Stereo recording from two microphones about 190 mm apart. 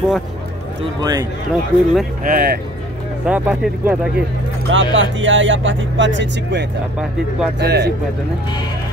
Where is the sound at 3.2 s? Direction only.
5° right (ahead or behind).